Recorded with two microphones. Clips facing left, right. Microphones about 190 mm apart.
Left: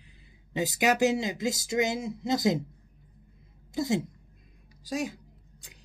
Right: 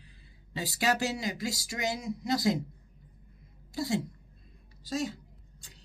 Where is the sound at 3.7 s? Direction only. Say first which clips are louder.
Left 3 dB; 20° left (ahead or behind).